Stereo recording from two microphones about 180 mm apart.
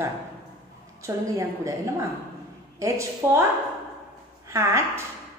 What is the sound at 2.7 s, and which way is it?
Speech, 15° right (ahead or behind).